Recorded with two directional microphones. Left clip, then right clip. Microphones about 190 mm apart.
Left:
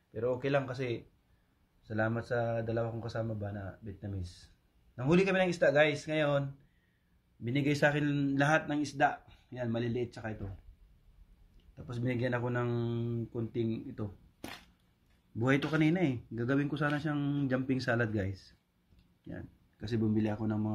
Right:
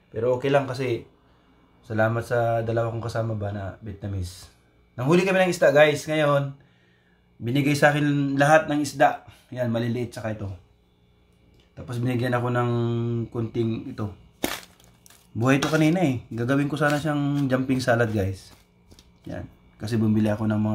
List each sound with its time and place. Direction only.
0.1 s speech: 25° left (ahead or behind)
7.4 s speech: 10° left (ahead or behind)
11.7 s speech: 20° left (ahead or behind)
15.3 s speech: 5° left (ahead or behind)